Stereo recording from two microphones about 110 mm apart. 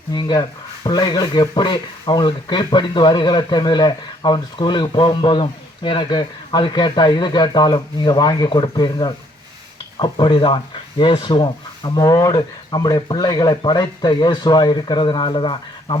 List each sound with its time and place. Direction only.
0.1 s speech: 45° left (ahead or behind)
11.9 s speech: 35° left (ahead or behind)